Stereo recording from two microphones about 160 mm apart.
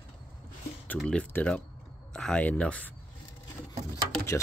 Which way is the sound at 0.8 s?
10° left (ahead or behind).